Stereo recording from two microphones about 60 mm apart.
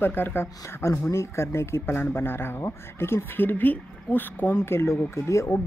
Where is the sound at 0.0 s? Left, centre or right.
Left.